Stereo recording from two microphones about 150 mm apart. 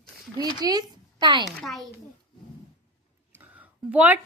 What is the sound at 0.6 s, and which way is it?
Speech, 25° right (ahead or behind).